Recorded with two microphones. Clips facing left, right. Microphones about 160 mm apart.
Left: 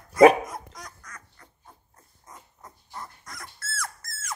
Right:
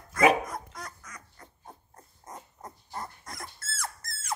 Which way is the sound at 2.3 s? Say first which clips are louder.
Right 4 dB; 40° right (ahead or behind).